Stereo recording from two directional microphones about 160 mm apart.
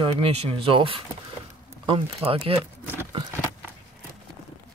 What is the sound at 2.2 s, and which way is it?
Speech, 35° right (ahead or behind).